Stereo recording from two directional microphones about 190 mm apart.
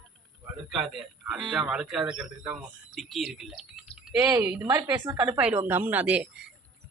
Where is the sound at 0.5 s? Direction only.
Centre (ahead or behind).